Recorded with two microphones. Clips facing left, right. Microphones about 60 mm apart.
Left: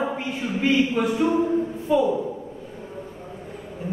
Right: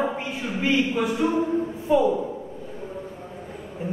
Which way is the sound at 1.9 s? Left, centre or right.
Centre.